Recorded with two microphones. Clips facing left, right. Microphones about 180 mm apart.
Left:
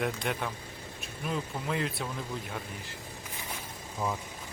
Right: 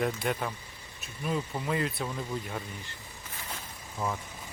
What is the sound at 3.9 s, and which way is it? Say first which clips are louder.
Speech: even; 5° left (ahead or behind).